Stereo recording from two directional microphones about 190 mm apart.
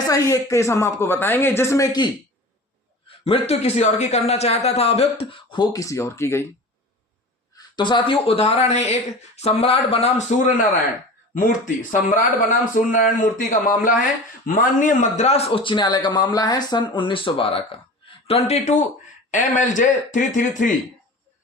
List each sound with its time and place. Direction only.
0.1 s speech: 15° left (ahead or behind)
3.2 s speech: 30° left (ahead or behind); by 6.5 s 15° left (ahead or behind)
7.5 s speech: 25° left (ahead or behind)
11.3 s speech: 45° left (ahead or behind)